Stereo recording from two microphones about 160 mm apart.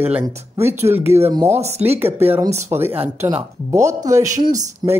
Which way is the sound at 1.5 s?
45° right (ahead or behind).